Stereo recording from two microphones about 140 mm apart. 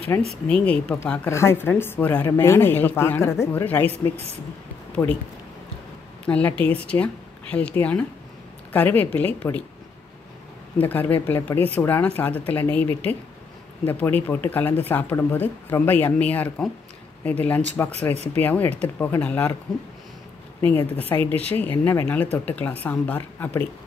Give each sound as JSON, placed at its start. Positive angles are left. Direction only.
{"t": 0.3, "sound": "speech", "side_deg": 10}
{"t": 1.3, "sound": "speech", "side_deg": 20}
{"t": 5.0, "sound": "speech", "side_deg": 20}
{"t": 6.2, "sound": "speech", "side_deg": 10}
{"t": 10.8, "sound": "speech", "side_deg": 15}
{"t": 18.1, "sound": "speech", "side_deg": -50}
{"t": 18.4, "sound": "speech", "side_deg": 15}
{"t": 20.7, "sound": "speech", "side_deg": 15}